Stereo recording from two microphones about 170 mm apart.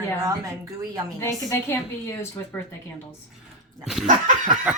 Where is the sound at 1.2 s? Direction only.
20° left (ahead or behind).